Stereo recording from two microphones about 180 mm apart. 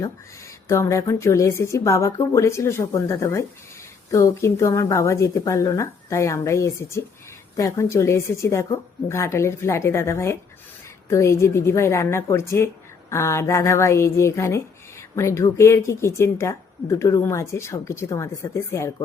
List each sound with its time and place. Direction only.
0.7 s a woman's voice: 15° left (ahead or behind)